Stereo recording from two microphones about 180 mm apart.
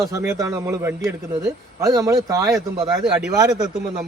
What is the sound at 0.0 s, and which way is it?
Speech, 15° right (ahead or behind).